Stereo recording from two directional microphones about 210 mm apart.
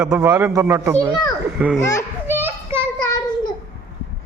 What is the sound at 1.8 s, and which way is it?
Speech, 15° left (ahead or behind).